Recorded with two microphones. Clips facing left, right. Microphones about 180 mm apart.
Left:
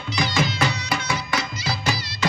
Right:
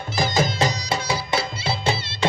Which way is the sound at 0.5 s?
30° right (ahead or behind).